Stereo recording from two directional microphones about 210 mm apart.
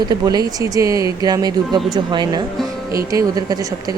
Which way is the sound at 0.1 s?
20° right (ahead or behind).